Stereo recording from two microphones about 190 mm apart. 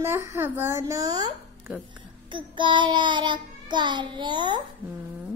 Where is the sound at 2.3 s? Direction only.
25° right (ahead or behind).